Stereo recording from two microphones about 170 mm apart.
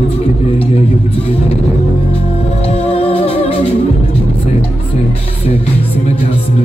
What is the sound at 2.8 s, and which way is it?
Music, 35° left (ahead or behind).